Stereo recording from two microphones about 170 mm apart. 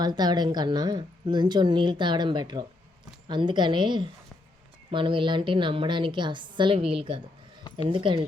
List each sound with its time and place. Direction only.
0.0 s a woman's voice: 25° right (ahead or behind)